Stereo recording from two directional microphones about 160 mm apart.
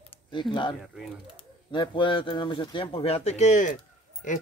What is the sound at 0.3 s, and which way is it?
Speech, 30° left (ahead or behind).